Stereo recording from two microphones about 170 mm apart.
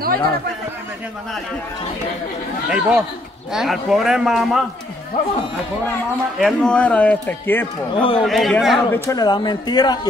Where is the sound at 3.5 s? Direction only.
Centre (ahead or behind).